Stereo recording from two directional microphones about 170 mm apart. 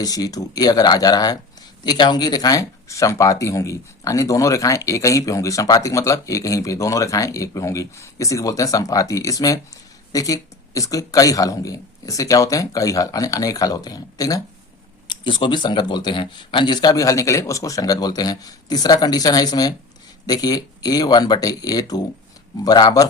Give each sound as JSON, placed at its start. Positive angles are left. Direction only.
{"t": 0.0, "sound": "speech", "side_deg": 20}